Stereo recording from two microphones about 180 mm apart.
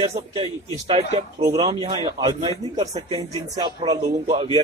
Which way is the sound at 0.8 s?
35° right (ahead or behind).